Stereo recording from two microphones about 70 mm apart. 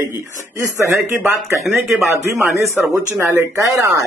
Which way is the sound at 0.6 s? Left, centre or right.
Right.